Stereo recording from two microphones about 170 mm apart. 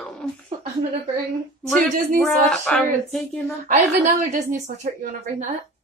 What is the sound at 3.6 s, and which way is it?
Speech, 45° right (ahead or behind).